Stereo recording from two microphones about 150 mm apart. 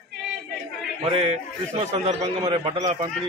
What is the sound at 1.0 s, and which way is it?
A man's voice, 40° right (ahead or behind).